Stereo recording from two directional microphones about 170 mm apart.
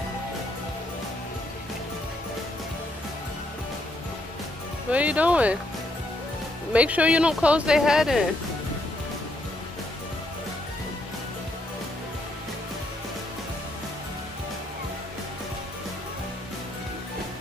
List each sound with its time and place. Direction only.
4.9 s speech: 10° right (ahead or behind)
6.7 s speech: 10° right (ahead or behind)